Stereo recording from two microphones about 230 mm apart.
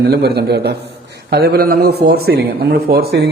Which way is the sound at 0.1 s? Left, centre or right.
Right.